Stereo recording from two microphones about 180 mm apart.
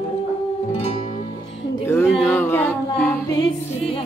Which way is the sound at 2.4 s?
10° left (ahead or behind).